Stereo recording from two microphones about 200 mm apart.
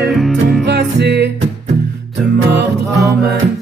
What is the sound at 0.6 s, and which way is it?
Music, 60° right (ahead or behind).